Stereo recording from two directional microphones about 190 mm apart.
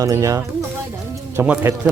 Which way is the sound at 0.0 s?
15° right (ahead or behind).